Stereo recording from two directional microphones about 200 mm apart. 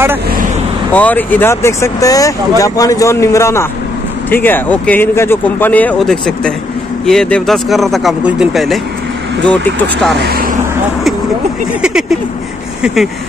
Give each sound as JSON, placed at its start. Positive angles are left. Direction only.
{"t": 0.9, "sound": "speech", "side_deg": 10}
{"t": 10.1, "sound": "speech", "side_deg": -50}
{"t": 11.8, "sound": "speech", "side_deg": -5}